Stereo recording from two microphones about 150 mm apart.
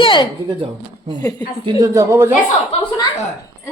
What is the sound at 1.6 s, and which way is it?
Speech, 25° right (ahead or behind).